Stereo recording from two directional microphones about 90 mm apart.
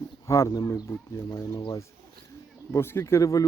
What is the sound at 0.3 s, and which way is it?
Speech, 35° left (ahead or behind).